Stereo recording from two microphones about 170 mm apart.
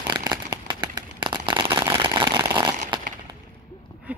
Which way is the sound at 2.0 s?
30° right (ahead or behind).